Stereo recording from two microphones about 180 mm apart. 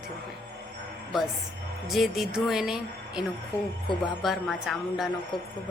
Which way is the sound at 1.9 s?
Centre (ahead or behind).